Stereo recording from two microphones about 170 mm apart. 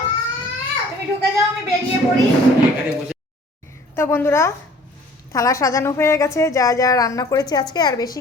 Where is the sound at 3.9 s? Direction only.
15° left (ahead or behind).